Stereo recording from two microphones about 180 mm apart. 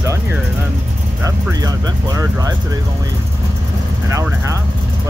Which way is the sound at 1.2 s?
20° right (ahead or behind).